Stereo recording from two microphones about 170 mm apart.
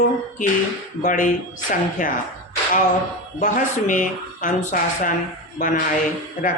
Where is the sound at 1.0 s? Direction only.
50° left (ahead or behind).